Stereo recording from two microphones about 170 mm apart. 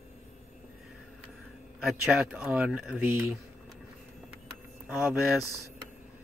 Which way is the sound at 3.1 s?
15° right (ahead or behind).